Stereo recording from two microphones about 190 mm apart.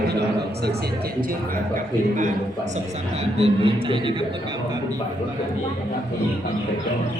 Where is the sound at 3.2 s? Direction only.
30° right (ahead or behind).